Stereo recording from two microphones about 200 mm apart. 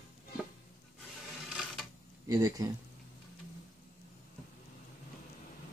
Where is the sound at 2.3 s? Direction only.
15° right (ahead or behind).